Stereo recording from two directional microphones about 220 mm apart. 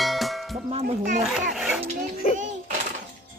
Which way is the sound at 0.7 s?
30° right (ahead or behind).